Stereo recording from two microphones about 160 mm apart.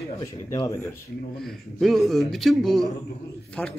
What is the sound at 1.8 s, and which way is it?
Speech, centre (ahead or behind).